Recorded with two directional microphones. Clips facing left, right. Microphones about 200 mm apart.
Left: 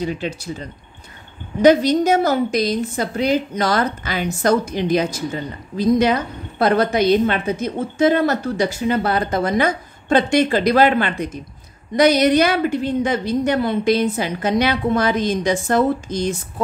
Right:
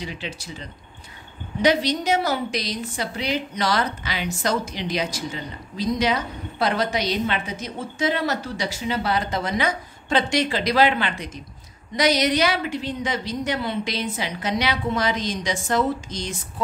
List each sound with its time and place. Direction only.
0.0 s a woman's voice: 45° left (ahead or behind)